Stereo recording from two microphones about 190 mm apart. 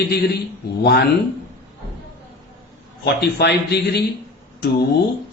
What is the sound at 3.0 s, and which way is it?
A man's voice, 60° left (ahead or behind).